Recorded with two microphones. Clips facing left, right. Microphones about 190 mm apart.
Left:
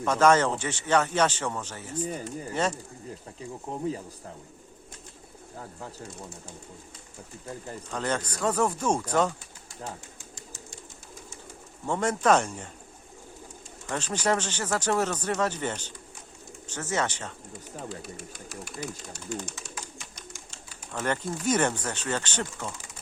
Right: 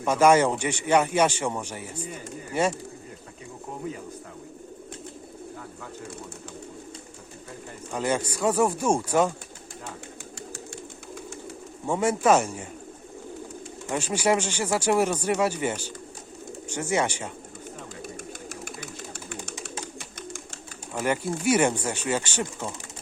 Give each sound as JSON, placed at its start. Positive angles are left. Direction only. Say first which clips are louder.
{"t": 0.0, "sound": "speech", "louder": "right 2 dB", "side_deg": -10}
{"t": 7.9, "sound": "speech", "louder": "right 4 dB", "side_deg": -10}
{"t": 11.9, "sound": "speech", "louder": "right 2 dB", "side_deg": -10}
{"t": 13.8, "sound": "speech", "louder": "right 3 dB", "side_deg": -10}
{"t": 17.8, "sound": "pigeon", "louder": "right 1 dB", "side_deg": -45}
{"t": 19.8, "sound": "bird", "louder": "right 7 dB", "side_deg": -55}
{"t": 20.9, "sound": "speech", "louder": "right 3 dB", "side_deg": -10}